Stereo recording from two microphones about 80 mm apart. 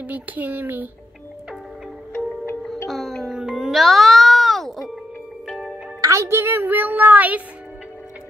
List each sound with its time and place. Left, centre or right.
0.0 s speech: centre
2.9 s music: centre
5.9 s speech: right; by 7.4 s centre